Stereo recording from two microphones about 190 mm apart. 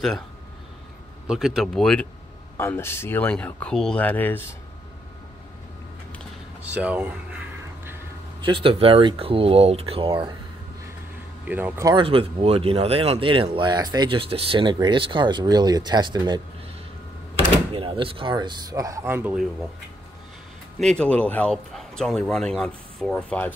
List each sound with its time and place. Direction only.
1.2 s speech: centre (ahead or behind)
6.6 s speech: 5° right (ahead or behind)
8.4 s speech: 25° right (ahead or behind)
11.4 s speech: 10° right (ahead or behind)
11.9 s speech: 30° right (ahead or behind)
17.7 s speech: 25° right (ahead or behind); by 19.7 s 5° right (ahead or behind)
20.8 s speech: 5° left (ahead or behind)